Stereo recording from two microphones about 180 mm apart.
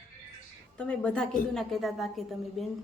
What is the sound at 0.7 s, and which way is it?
A woman's voice, 5° left (ahead or behind).